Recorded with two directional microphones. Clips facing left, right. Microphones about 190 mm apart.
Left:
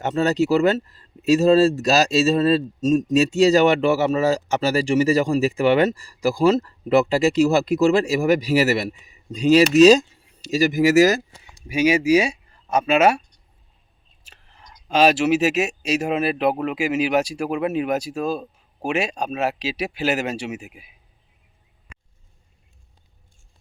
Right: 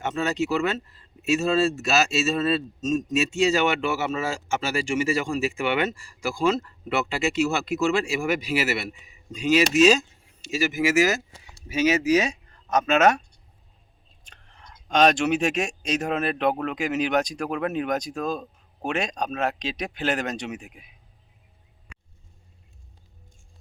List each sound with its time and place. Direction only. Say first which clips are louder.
0.0 s speech: left 6 dB; 35° left (ahead or behind)
11.5 s speech: left 3 dB; 10° left (ahead or behind)
14.3 s speech: left 1 dB; 5° left (ahead or behind)